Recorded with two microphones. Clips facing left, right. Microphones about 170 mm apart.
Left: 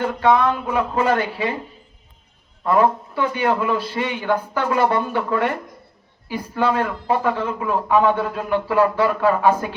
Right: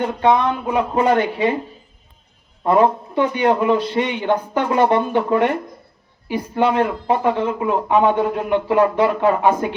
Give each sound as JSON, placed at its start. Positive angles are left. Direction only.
{"t": 0.0, "sound": "speech", "side_deg": -20}
{"t": 2.6, "sound": "speech", "side_deg": -25}